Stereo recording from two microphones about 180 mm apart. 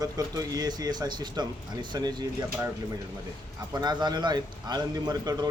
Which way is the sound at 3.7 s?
25° right (ahead or behind).